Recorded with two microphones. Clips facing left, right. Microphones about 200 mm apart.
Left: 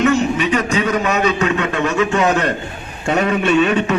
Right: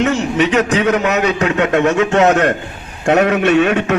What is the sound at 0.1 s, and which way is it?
A man's voice, 70° right (ahead or behind).